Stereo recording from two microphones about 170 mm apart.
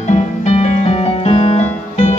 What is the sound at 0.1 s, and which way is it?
Music, 40° left (ahead or behind).